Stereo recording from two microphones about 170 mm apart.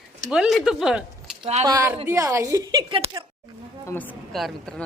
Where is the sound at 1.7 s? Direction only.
15° right (ahead or behind); by 3.1 s 30° right (ahead or behind).